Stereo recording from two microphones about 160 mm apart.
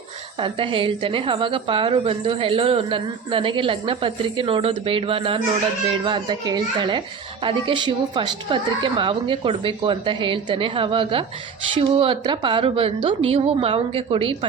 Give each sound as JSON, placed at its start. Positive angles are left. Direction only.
{"t": 0.3, "sound": "a woman's voice", "side_deg": -30}